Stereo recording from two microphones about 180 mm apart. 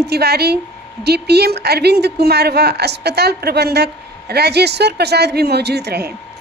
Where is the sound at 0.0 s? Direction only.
65° right (ahead or behind).